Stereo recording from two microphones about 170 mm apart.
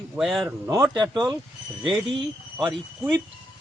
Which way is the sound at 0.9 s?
25° right (ahead or behind).